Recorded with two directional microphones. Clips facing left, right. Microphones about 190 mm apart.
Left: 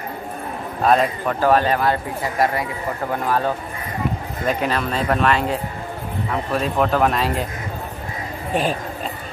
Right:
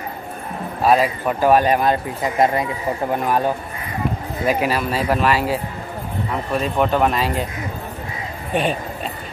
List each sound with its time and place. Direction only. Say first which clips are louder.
0.8 s speech: right 1 dB; 5° right (ahead or behind)
8.5 s speech: right 1 dB; centre (ahead or behind)